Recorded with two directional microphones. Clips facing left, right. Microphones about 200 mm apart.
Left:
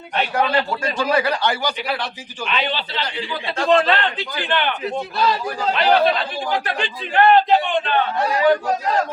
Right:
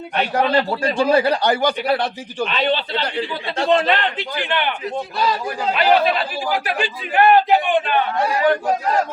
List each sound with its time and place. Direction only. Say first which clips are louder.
0.3 s speech: right 3 dB; 35° right (ahead or behind)
1.6 s a man's voice: right 6 dB; 55° right (ahead or behind)
2.5 s speech: right 3 dB; 35° right (ahead or behind)
2.9 s a man's voice: right 4 dB; 55° right (ahead or behind)
3.6 s a man's voice: even; 20° right (ahead or behind)
5.1 s a man's voice: even; centre (ahead or behind)